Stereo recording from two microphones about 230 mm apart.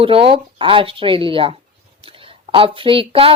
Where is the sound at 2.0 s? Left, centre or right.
Right.